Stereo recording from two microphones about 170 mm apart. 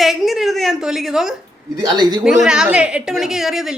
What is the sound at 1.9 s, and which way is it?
Speech, 25° right (ahead or behind).